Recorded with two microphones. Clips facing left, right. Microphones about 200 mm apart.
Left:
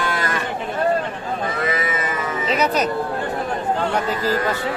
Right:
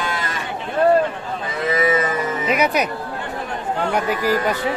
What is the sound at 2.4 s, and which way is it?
Music, 10° right (ahead or behind).